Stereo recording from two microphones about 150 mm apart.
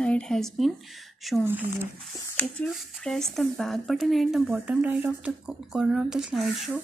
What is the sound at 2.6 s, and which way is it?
Speech, centre (ahead or behind).